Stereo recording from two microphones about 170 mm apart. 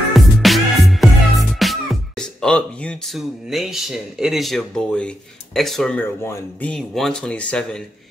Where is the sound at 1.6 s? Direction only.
Centre (ahead or behind); by 6.7 s 15° left (ahead or behind).